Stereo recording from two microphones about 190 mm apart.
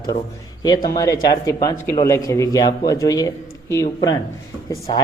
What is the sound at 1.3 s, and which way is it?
Speech, 20° left (ahead or behind).